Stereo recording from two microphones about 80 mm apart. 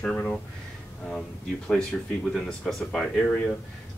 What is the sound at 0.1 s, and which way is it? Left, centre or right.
Speech, centre.